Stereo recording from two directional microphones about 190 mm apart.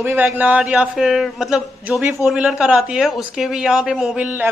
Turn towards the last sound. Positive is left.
turn(degrees=-5)  # may be behind; listen again after turning